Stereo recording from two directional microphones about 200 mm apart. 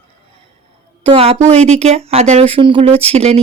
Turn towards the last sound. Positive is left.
turn(degrees=-30)  # may be behind; listen again after turning